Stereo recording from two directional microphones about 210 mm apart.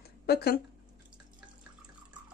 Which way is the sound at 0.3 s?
50° left (ahead or behind).